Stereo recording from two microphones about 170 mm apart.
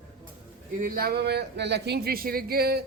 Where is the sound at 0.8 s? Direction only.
55° right (ahead or behind).